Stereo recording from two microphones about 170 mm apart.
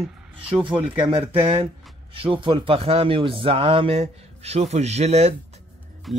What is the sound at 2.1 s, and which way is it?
A man's voice, 30° right (ahead or behind).